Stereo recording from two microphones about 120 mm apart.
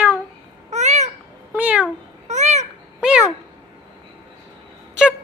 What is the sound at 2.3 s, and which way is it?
Babbling, 75° right (ahead or behind).